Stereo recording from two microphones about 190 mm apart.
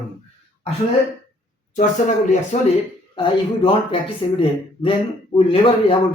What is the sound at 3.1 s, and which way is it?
Speech, 25° left (ahead or behind).